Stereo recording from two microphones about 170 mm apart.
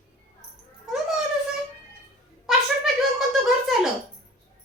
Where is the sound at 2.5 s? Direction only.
Centre (ahead or behind).